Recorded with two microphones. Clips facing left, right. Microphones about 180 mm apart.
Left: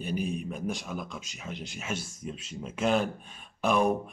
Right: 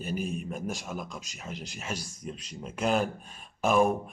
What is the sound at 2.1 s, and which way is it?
Speech, centre (ahead or behind).